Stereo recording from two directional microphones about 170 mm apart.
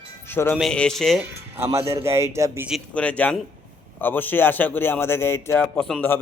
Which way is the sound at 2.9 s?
10° left (ahead or behind).